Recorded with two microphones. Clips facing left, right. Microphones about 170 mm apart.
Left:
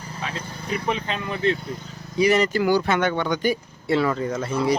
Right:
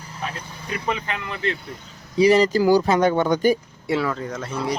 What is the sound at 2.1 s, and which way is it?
Speech, 30° right (ahead or behind).